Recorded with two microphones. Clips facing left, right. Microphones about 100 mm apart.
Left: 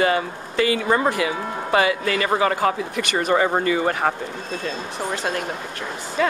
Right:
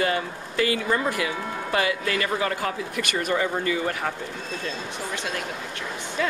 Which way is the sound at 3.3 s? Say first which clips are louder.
Left 6 dB; 50° left (ahead or behind).